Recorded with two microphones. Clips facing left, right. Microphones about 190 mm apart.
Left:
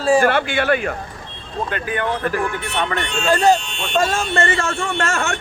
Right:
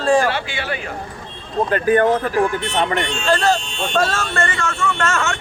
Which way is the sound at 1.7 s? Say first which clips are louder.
Right 9 dB; 40° right (ahead or behind).